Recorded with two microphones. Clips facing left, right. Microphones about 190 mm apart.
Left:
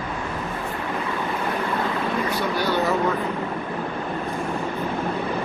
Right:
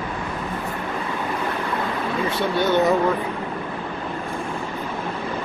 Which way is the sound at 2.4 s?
25° right (ahead or behind).